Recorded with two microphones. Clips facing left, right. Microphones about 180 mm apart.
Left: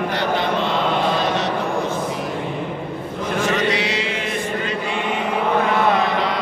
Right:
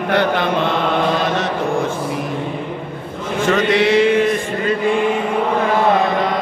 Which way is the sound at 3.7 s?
55° right (ahead or behind).